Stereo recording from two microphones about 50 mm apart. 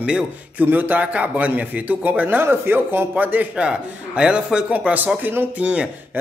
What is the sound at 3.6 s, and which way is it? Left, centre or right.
A man's voice, right.